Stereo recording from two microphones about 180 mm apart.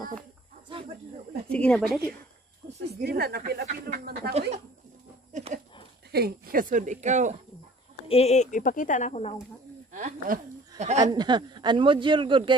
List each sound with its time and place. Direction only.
0.7 s snake: 30° right (ahead or behind)
1.5 s speech: 5° left (ahead or behind)
2.9 s speech: 60° right (ahead or behind)
4.3 s speech: 35° right (ahead or behind)
5.3 s a sound: 40° right (ahead or behind)
6.1 s speech: 55° right (ahead or behind)
8.1 s speech: 35° left (ahead or behind)
9.9 s speech: 50° right (ahead or behind)
11.1 s a man's voice: 25° right (ahead or behind)